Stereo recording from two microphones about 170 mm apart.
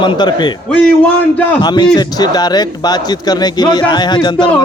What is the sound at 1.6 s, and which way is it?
A man's voice, 25° left (ahead or behind).